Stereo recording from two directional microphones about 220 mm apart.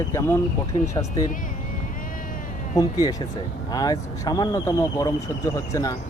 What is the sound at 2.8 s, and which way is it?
Speech, 15° left (ahead or behind).